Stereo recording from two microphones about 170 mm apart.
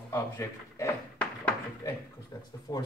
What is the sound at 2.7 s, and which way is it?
Speech, 25° left (ahead or behind).